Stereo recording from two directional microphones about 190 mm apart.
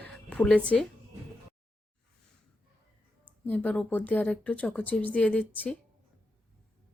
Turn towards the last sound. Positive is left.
turn(degrees=5)  # may be behind; listen again after turning